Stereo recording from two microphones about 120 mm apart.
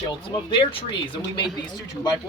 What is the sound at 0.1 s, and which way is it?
Speech, 45° left (ahead or behind).